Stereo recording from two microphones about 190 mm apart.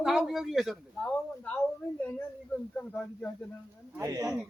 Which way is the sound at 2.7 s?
10° left (ahead or behind).